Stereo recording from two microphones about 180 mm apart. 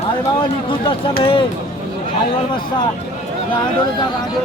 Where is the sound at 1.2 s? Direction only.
30° left (ahead or behind).